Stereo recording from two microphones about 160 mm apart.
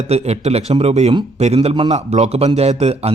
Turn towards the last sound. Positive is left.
turn(degrees=-40)  # may be behind; listen again after turning